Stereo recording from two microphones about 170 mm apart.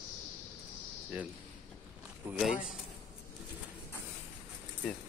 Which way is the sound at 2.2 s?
5° right (ahead or behind).